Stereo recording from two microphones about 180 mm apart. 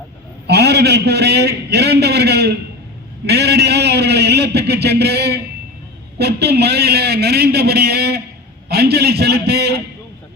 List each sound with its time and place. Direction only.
0.4 s a man's voice: 65° right (ahead or behind)